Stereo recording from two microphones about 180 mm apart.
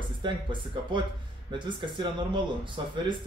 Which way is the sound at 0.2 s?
25° right (ahead or behind).